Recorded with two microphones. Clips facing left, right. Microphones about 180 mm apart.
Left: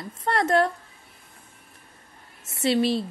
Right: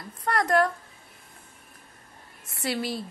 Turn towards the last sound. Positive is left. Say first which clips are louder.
# left 8 dB
turn(degrees=25)  # may be behind; listen again after turning